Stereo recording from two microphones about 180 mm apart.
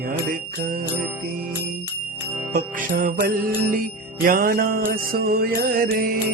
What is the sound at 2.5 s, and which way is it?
Music, 55° right (ahead or behind).